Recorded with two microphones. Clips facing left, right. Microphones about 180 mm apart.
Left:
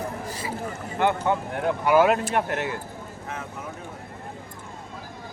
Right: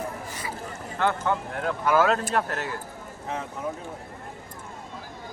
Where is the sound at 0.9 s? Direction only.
20° left (ahead or behind).